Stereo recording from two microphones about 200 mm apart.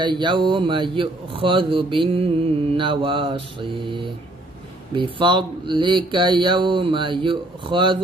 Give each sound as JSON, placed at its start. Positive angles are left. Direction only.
{"t": 0.0, "sound": "speech", "side_deg": -25}